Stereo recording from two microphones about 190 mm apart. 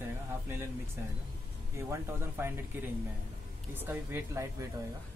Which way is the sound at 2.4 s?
10° right (ahead or behind).